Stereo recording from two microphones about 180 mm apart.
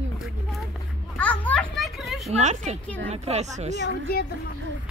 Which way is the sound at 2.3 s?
40° right (ahead or behind).